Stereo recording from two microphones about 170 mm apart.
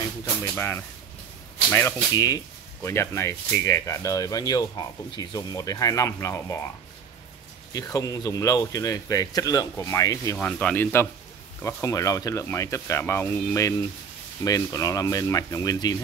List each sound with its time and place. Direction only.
0.2 s speech: 15° left (ahead or behind)
7.7 s speech: 20° left (ahead or behind)